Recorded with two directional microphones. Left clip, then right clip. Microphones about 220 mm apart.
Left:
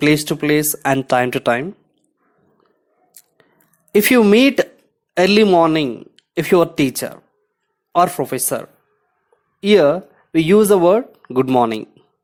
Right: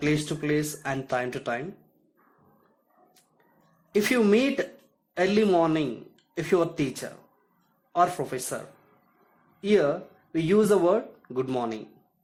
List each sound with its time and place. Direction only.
0.0 s speech: 45° left (ahead or behind)
3.9 s speech: 45° left (ahead or behind)